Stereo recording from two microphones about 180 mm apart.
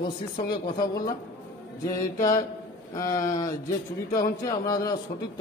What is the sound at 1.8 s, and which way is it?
Speech, 20° left (ahead or behind).